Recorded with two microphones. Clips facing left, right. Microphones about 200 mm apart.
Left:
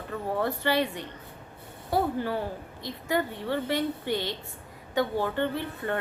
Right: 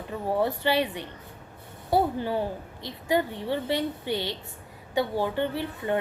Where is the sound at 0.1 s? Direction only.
15° right (ahead or behind).